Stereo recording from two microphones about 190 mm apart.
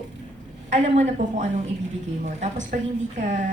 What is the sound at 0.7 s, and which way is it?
A woman's voice, 35° right (ahead or behind).